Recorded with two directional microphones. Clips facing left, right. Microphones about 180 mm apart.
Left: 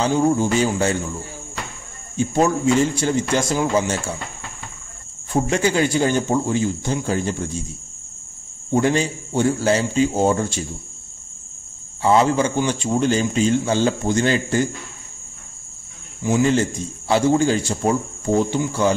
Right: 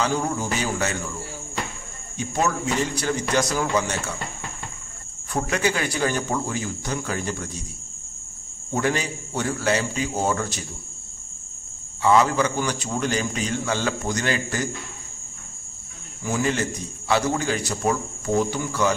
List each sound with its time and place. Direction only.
0.0 s a man's voice: 30° left (ahead or behind)
2.1 s a man's voice: 30° left (ahead or behind)
5.3 s a man's voice: 30° left (ahead or behind)
8.7 s a man's voice: 30° left (ahead or behind)
12.0 s a man's voice: 30° left (ahead or behind)
16.2 s a man's voice: 25° left (ahead or behind)